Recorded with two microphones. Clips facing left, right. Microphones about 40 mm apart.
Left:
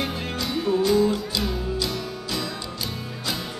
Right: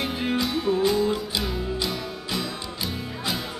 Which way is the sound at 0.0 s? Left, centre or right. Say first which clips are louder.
Right 3 dB; centre.